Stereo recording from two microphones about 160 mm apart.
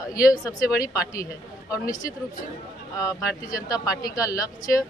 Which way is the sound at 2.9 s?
20° left (ahead or behind).